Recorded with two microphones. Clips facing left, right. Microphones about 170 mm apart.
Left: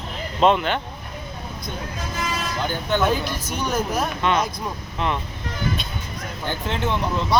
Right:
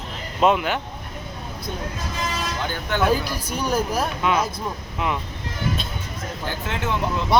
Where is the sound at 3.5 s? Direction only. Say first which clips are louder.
Right 1 dB; 10° right (ahead or behind).